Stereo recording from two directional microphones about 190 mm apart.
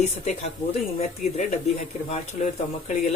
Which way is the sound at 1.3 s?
40° left (ahead or behind).